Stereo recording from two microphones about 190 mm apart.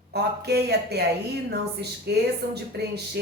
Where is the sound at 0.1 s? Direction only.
60° right (ahead or behind).